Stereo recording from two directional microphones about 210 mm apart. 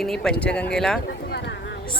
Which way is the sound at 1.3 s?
55° left (ahead or behind).